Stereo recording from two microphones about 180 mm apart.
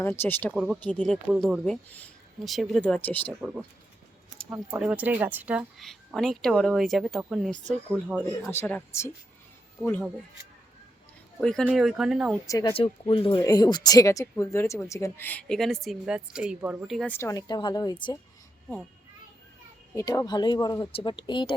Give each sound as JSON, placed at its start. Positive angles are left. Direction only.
{"t": 0.2, "sound": "speech", "side_deg": 10}
{"t": 0.5, "sound": "speech", "side_deg": -5}
{"t": 4.4, "sound": "speech", "side_deg": -5}
{"t": 8.4, "sound": "speech", "side_deg": 10}
{"t": 11.3, "sound": "speech", "side_deg": 0}
{"t": 12.5, "sound": "speech", "side_deg": 20}
{"t": 12.7, "sound": "speech", "side_deg": 30}
{"t": 17.1, "sound": "speech", "side_deg": 15}
{"t": 20.0, "sound": "speech", "side_deg": 20}